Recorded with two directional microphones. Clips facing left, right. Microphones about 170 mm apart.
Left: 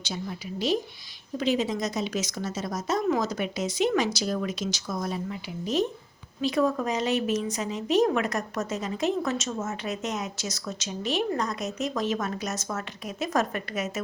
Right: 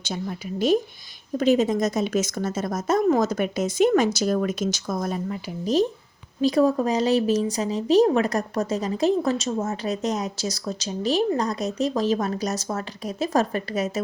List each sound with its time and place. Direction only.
1.4 s a woman's voice: 45° right (ahead or behind)